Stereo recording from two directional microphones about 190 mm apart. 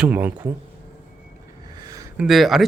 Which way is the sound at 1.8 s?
20° right (ahead or behind).